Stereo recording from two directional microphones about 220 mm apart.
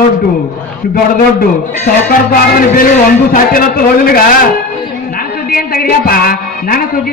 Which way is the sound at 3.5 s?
40° left (ahead or behind).